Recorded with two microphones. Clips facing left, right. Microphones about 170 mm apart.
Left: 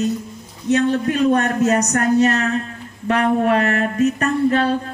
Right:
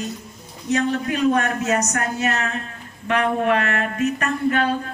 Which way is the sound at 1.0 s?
35° left (ahead or behind).